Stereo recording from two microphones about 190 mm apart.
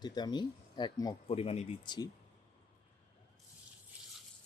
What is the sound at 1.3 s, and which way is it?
Speech, 30° left (ahead or behind).